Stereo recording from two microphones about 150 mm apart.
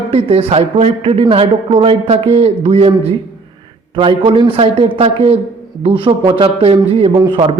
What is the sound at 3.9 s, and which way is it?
A man's voice, 35° right (ahead or behind).